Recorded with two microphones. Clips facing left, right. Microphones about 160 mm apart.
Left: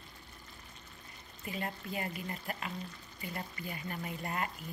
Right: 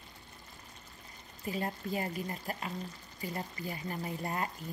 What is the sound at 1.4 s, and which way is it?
Speech, 35° right (ahead or behind).